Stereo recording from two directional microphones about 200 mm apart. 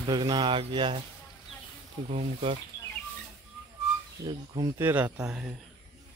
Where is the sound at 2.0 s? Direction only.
30° right (ahead or behind).